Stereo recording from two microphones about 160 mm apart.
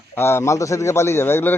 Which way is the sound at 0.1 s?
15° left (ahead or behind).